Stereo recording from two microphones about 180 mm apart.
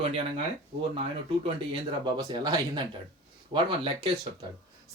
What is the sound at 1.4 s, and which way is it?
A man's voice, 30° right (ahead or behind).